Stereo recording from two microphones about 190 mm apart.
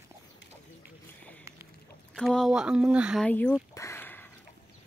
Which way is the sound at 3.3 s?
5° left (ahead or behind).